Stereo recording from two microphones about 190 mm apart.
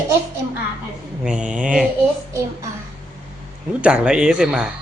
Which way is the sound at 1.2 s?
5° right (ahead or behind).